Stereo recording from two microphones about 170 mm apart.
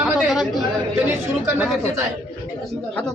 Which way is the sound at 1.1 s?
10° right (ahead or behind).